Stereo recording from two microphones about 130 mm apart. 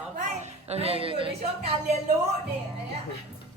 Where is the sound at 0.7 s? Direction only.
50° right (ahead or behind).